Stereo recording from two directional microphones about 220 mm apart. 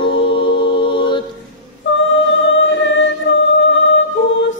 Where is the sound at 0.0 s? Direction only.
20° left (ahead or behind).